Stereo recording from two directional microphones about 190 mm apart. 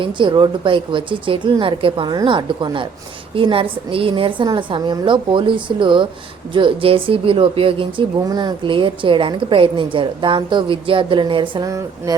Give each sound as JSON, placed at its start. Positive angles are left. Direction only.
{"t": 0.0, "sound": "speech", "side_deg": -25}